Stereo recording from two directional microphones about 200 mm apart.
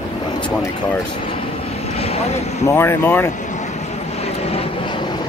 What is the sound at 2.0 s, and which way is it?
Vehicle, 30° left (ahead or behind).